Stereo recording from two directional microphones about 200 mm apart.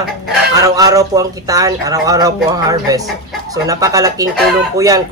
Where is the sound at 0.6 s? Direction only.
15° right (ahead or behind).